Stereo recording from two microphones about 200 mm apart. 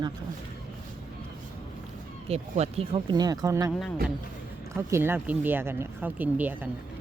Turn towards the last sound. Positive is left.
turn(degrees=-10)  # may be behind; listen again after turning